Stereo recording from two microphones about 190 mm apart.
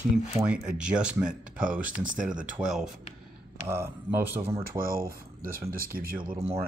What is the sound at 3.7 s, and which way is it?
Speech, 15° right (ahead or behind).